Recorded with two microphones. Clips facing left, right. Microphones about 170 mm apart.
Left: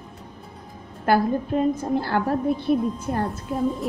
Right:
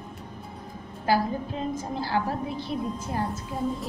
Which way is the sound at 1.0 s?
55° left (ahead or behind).